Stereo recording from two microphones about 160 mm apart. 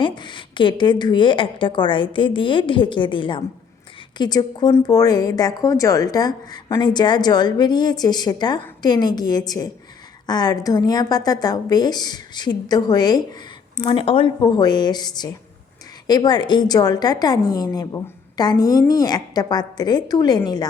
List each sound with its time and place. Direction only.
0.0 s a woman's voice: 30° left (ahead or behind)